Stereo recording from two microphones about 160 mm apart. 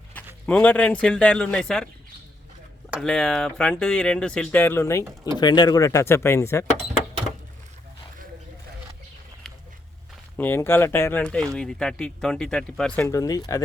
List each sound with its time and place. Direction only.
0.4 s speech: 10° left (ahead or behind)
3.0 s speech: 5° left (ahead or behind)
5.0 s speech: 15° right (ahead or behind)
5.4 s speech: 25° left (ahead or behind)
10.3 s speech: 15° left (ahead or behind)
13.1 s speech: 20° left (ahead or behind)